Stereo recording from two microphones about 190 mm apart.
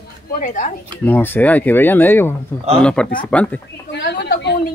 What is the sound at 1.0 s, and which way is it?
Speech, 10° left (ahead or behind).